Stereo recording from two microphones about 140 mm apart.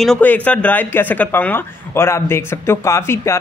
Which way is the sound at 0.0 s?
10° left (ahead or behind).